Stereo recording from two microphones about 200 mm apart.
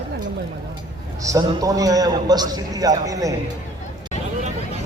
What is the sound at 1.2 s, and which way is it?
A man's voice, 15° right (ahead or behind).